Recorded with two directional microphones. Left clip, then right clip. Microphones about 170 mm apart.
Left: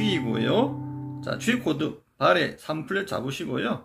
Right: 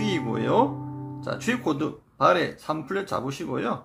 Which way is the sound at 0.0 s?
Centre (ahead or behind).